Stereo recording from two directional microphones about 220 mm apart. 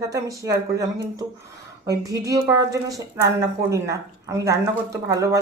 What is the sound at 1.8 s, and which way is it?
Speech, 15° right (ahead or behind).